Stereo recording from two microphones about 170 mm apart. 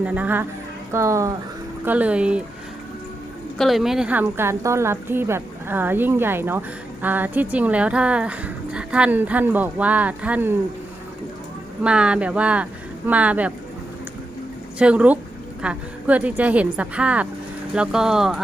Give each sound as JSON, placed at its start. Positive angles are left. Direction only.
{"t": 0.0, "sound": "a woman's voice", "side_deg": -10}
{"t": 3.6, "sound": "a woman's voice", "side_deg": 0}
{"t": 11.8, "sound": "a woman's voice", "side_deg": -5}
{"t": 14.8, "sound": "a woman's voice", "side_deg": -5}